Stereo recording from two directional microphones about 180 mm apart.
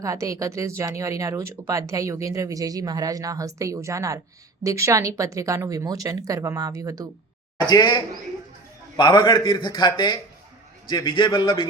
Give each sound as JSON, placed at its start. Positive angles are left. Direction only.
{"t": 0.0, "sound": "speech", "side_deg": -15}
{"t": 7.7, "sound": "a man's voice", "side_deg": 25}